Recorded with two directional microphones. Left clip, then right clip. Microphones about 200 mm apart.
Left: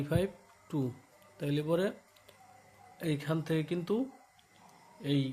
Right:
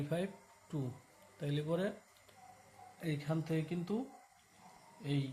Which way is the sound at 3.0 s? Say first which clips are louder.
Left 6 dB; 50° left (ahead or behind).